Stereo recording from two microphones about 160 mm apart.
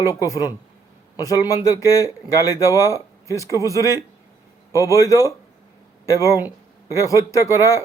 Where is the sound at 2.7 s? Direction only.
20° right (ahead or behind).